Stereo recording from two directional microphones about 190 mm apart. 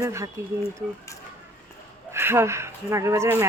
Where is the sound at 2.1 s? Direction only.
15° right (ahead or behind).